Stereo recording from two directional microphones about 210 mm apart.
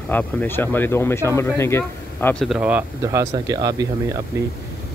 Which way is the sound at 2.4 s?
5° right (ahead or behind).